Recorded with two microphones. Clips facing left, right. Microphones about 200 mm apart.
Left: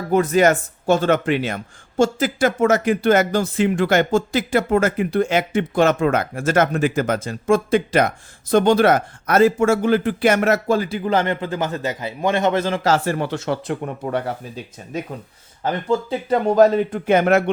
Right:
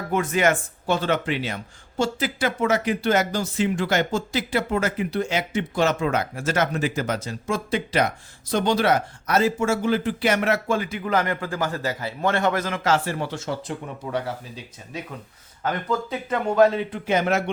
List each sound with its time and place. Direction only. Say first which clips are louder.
0.1 s speech: left 6 dB; 40° left (ahead or behind)
13.1 s speech: left 5 dB; 65° left (ahead or behind)
15.6 s speech: left 5 dB; 30° left (ahead or behind); by 17.5 s 55° left (ahead or behind)